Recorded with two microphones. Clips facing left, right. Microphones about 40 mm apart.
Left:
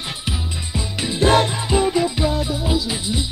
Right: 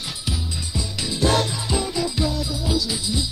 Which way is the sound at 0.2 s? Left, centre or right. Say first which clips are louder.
Left 2 dB; left.